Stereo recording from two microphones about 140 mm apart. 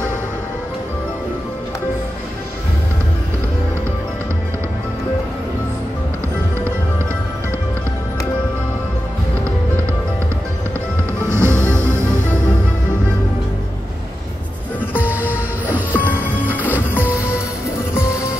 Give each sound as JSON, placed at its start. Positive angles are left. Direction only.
{"t": 11.2, "sound": "music", "side_deg": -20}
{"t": 15.0, "sound": "music", "side_deg": -15}
{"t": 15.9, "sound": "music", "side_deg": 15}
{"t": 16.4, "sound": "music", "side_deg": -10}